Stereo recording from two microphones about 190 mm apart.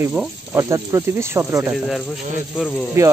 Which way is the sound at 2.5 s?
5° right (ahead or behind).